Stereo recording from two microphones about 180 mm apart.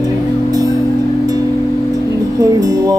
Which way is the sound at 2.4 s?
20° right (ahead or behind).